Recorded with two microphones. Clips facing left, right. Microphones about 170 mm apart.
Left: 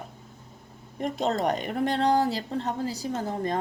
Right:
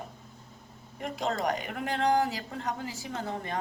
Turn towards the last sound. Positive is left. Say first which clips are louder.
# left 6 dB
turn(degrees=40)  # may be behind; listen again after turning